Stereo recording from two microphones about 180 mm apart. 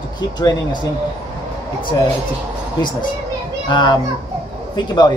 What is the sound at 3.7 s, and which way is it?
A man's voice, 25° left (ahead or behind).